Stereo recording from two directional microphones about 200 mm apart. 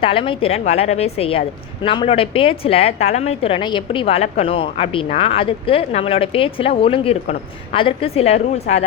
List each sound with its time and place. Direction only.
0.0 s a woman's voice: 25° left (ahead or behind)